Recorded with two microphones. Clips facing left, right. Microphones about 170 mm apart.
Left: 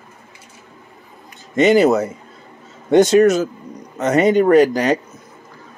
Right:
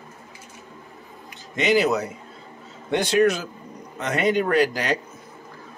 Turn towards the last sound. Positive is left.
turn(degrees=45)  # may be behind; listen again after turning